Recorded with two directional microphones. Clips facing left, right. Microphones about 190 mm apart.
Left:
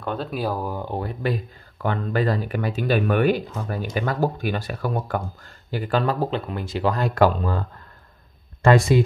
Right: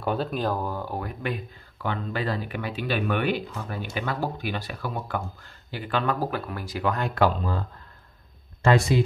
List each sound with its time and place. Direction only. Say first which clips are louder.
0.0 s speech: right 1 dB; 5° right (ahead or behind)
0.3 s speech: left 1 dB; 10° left (ahead or behind)
0.8 s speech: left 5 dB; 30° left (ahead or behind)
6.1 s speech: left 4 dB; 25° left (ahead or behind)
8.6 s speech: left 4 dB; 50° left (ahead or behind)